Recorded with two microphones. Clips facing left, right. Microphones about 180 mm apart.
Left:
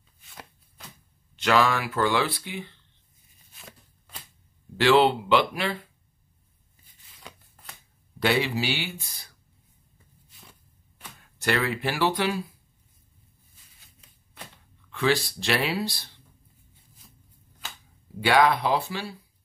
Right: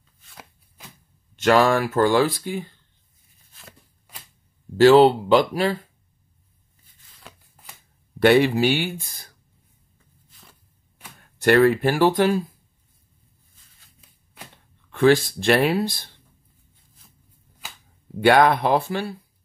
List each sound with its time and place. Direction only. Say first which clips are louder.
0.3 s chopping: even; 5° right (ahead or behind)
1.3 s speech: right 5 dB; 45° right (ahead or behind)
4.7 s speech: right 7 dB; 40° right (ahead or behind)
7.2 s a sound: even; centre (ahead or behind)
8.2 s speech: right 9 dB; 55° right (ahead or behind)
11.1 s speech: right 10 dB; 50° right (ahead or behind)
13.8 s a sound: right 1 dB; 5° right (ahead or behind)
14.9 s speech: right 8 dB; 50° right (ahead or behind)
18.2 s speech: right 5 dB; 55° right (ahead or behind)